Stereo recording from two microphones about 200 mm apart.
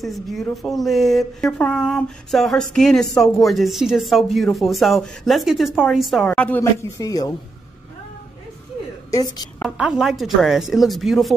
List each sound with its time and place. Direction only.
0.0 s speech: centre (ahead or behind); by 7.3 s 20° left (ahead or behind)
9.1 s a woman's voice: 20° left (ahead or behind)
9.6 s speech: 5° right (ahead or behind)